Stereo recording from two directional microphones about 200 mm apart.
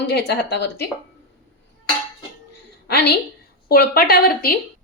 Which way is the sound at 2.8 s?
55° left (ahead or behind).